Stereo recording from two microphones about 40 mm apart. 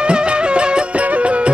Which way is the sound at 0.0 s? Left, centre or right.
Right.